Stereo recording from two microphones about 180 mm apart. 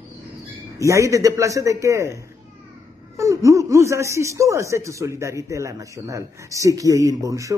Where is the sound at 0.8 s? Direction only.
15° right (ahead or behind).